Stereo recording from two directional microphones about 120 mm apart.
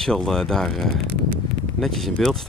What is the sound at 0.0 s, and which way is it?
Speech, 5° left (ahead or behind).